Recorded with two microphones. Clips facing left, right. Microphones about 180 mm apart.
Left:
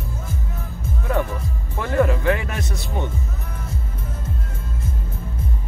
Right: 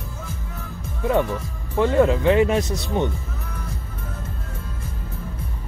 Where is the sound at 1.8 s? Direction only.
20° right (ahead or behind).